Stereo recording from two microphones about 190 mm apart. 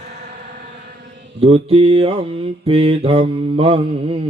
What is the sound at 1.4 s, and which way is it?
Mantra, 30° right (ahead or behind).